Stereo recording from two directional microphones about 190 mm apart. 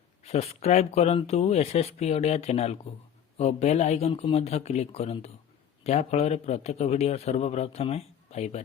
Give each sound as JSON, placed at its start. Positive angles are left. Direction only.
{"t": 0.3, "sound": "a man's voice", "side_deg": 35}